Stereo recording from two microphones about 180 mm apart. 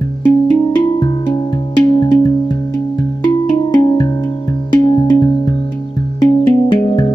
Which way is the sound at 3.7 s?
25° left (ahead or behind).